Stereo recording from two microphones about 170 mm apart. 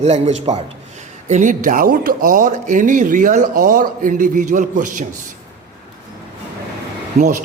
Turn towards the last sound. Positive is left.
turn(degrees=-50)  # may be behind; listen again after turning